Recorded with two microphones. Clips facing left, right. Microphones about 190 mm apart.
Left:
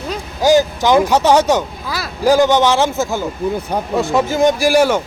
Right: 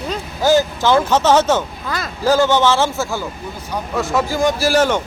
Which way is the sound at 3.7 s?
55° left (ahead or behind).